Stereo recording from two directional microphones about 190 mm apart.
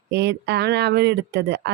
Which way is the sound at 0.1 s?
60° right (ahead or behind).